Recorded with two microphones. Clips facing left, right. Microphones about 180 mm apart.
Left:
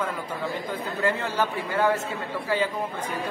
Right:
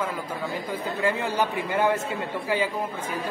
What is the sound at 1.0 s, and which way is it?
Speech, 15° right (ahead or behind).